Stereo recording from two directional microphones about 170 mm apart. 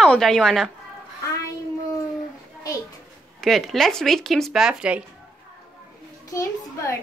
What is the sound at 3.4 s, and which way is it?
Speech, centre (ahead or behind).